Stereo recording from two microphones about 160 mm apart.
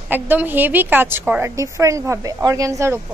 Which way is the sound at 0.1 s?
10° right (ahead or behind).